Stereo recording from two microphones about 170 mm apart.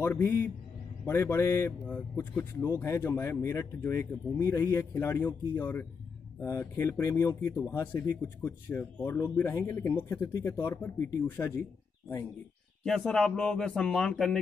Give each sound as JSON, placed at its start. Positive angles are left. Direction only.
{"t": 0.0, "sound": "speech", "side_deg": 15}
{"t": 12.8, "sound": "speech", "side_deg": 5}